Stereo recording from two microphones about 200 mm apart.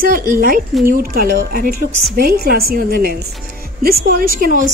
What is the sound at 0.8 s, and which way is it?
A woman's voice, 45° right (ahead or behind).